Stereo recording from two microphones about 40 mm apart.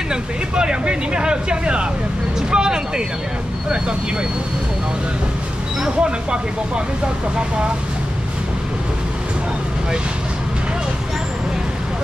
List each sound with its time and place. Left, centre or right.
0.1 s speech: right
5.9 s speech: right